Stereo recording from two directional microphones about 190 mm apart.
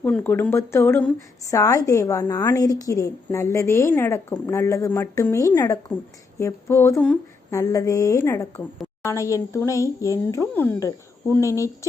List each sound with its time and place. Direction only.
0.0 s a woman's voice: 10° left (ahead or behind)